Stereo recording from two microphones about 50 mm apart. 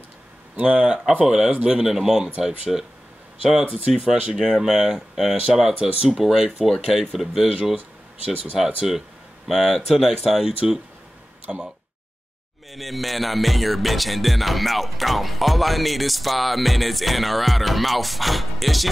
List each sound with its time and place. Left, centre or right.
0.6 s speech: right
6.7 s music: centre
8.8 s music: centre
10.4 s speech: centre
12.7 s music: centre